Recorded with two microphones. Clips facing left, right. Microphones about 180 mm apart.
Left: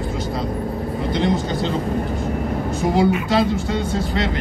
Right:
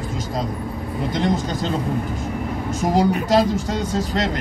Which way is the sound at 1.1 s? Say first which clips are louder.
Left 1 dB; 45° right (ahead or behind).